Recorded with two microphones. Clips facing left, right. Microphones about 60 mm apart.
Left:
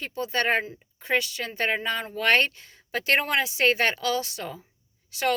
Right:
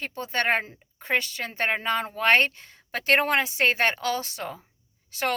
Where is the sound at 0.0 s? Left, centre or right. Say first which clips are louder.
Even; right.